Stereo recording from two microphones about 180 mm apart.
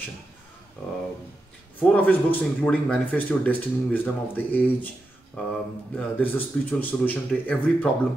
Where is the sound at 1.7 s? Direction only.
10° left (ahead or behind).